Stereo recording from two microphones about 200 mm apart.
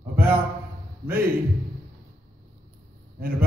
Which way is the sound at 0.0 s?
10° right (ahead or behind).